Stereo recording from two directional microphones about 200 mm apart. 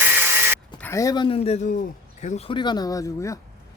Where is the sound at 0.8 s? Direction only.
15° left (ahead or behind); by 2.6 s 35° left (ahead or behind).